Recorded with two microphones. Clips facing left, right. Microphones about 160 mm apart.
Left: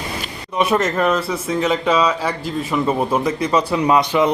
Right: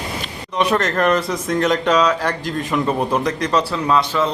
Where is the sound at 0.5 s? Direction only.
5° left (ahead or behind).